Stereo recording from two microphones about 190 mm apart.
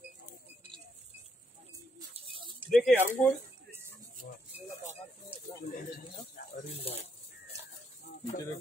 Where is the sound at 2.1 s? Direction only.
30° right (ahead or behind).